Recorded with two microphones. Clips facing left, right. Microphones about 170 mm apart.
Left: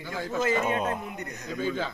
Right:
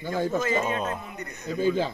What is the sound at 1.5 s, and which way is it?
Speech, 35° right (ahead or behind).